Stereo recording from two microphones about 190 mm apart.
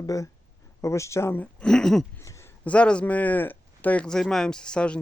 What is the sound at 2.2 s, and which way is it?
Speech, 15° left (ahead or behind).